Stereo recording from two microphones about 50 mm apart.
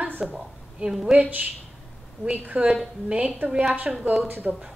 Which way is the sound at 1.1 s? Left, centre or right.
Right.